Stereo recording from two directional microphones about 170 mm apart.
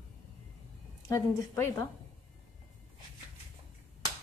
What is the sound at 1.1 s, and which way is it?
Speech, 20° left (ahead or behind).